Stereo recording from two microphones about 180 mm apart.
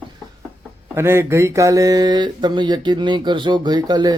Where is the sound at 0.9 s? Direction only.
15° right (ahead or behind).